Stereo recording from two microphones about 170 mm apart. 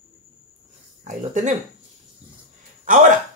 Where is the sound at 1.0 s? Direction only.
50° right (ahead or behind).